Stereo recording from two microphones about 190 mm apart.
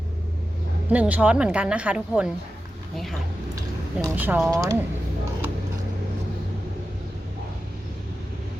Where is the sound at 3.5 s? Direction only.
15° right (ahead or behind).